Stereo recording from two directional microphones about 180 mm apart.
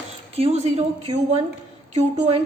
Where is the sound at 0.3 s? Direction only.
35° right (ahead or behind).